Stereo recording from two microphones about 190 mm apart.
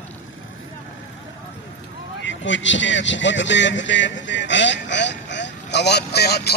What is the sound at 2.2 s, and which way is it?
A man's voice, 75° left (ahead or behind).